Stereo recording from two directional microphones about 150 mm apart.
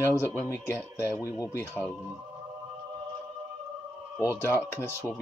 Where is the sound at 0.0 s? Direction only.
15° left (ahead or behind).